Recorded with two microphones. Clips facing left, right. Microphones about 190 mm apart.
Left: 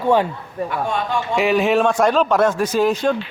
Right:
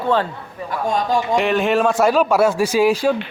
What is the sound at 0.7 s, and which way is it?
Speech, 40° right (ahead or behind).